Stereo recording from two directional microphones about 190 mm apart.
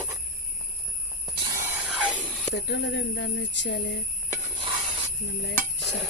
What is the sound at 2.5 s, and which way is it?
Speech, 65° left (ahead or behind).